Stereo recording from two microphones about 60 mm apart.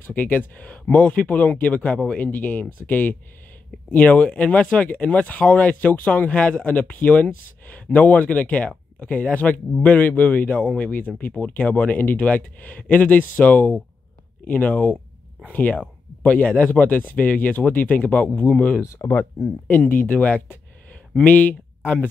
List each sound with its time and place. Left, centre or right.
0.0 s speech: left
19.0 s speech: left
19.9 s speech: left